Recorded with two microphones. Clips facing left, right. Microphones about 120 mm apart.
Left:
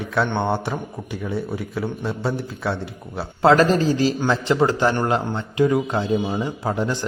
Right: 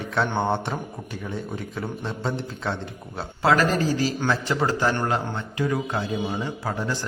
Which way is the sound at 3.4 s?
25° left (ahead or behind).